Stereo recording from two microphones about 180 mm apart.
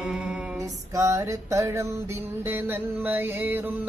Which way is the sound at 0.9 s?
15° right (ahead or behind).